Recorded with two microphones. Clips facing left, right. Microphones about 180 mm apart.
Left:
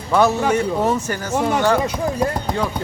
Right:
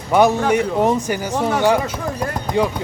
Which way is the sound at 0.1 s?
15° right (ahead or behind).